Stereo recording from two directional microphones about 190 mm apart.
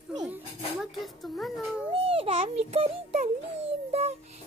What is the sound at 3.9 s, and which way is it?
Child singing, 35° right (ahead or behind).